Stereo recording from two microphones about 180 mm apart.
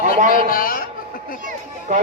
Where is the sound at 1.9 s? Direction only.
45° right (ahead or behind).